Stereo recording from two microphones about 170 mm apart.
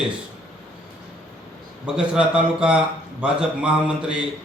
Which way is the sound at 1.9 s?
5° right (ahead or behind).